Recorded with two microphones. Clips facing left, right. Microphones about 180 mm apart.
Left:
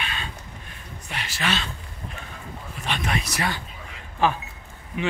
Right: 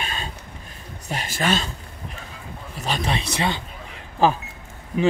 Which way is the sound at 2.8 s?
35° right (ahead or behind).